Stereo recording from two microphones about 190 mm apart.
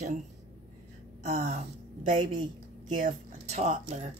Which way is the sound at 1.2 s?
35° right (ahead or behind).